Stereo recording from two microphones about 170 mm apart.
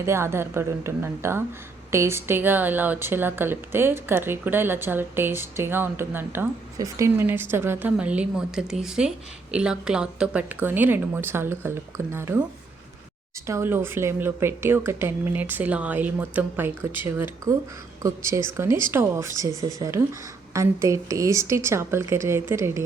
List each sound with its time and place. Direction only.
0.0 s speech: 15° right (ahead or behind)
13.5 s speech: 15° right (ahead or behind)